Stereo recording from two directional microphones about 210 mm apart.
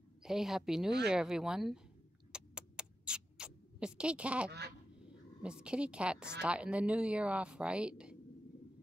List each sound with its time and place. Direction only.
0.2 s speech: centre (ahead or behind)
2.3 s a sound: 5° right (ahead or behind)
4.5 s quack: 50° right (ahead or behind)
5.0 s speech: 5° right (ahead or behind)